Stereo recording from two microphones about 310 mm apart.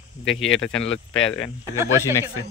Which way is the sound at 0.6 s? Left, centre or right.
Left.